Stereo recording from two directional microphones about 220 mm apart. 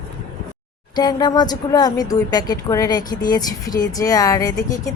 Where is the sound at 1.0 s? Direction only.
20° left (ahead or behind).